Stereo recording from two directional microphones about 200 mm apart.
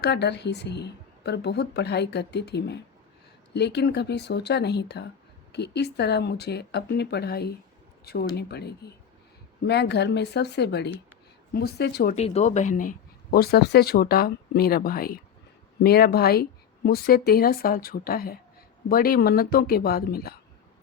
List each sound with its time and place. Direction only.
0.0 s a woman's voice: 55° left (ahead or behind)
12.1 s speech: 30° left (ahead or behind); by 20.3 s 50° left (ahead or behind)